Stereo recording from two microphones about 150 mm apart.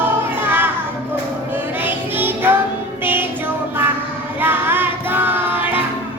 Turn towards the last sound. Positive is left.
turn(degrees=-10)  # may be behind; listen again after turning